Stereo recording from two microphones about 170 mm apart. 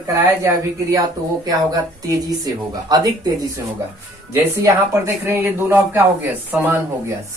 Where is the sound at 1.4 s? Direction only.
20° right (ahead or behind).